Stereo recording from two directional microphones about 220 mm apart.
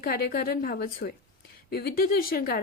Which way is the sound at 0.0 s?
40° left (ahead or behind).